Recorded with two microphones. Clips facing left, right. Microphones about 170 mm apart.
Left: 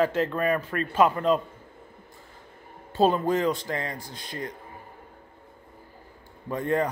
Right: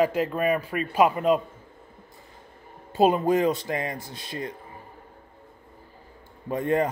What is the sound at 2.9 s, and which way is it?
A man's voice, 15° right (ahead or behind).